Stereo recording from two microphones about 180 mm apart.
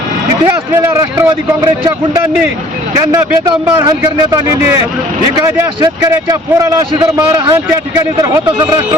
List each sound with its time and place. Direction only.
0.4 s a man's voice: 15° right (ahead or behind)
3.1 s a man's voice: 20° right (ahead or behind)